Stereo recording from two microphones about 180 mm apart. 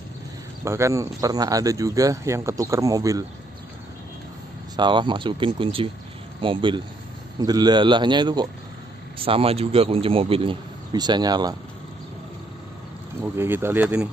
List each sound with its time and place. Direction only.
0.7 s speech: 15° right (ahead or behind)
4.7 s speech: 25° right (ahead or behind)
13.2 s speech: 10° right (ahead or behind)